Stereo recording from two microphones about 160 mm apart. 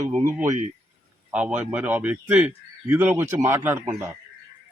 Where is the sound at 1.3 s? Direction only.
10° right (ahead or behind).